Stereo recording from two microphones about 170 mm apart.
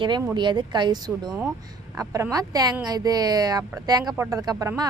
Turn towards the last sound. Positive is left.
turn(degrees=-20)  # may be behind; listen again after turning